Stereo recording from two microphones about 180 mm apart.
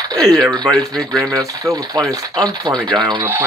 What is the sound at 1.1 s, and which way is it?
Speech, 20° right (ahead or behind).